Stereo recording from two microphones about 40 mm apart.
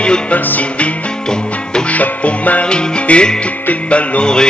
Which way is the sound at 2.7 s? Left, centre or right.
Left.